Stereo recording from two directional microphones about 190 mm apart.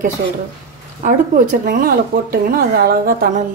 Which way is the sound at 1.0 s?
45° right (ahead or behind).